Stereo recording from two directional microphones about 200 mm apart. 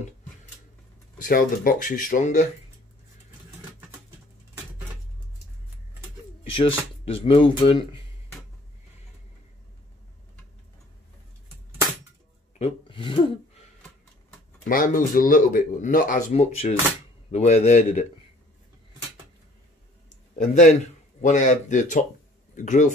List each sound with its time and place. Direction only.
1.1 s speech: 45° left (ahead or behind)
6.4 s a sound: 25° left (ahead or behind)
7.1 s speech: 25° left (ahead or behind)
12.5 s speech: 30° left (ahead or behind)
14.7 s speech: 45° left (ahead or behind)
20.3 s speech: 35° left (ahead or behind)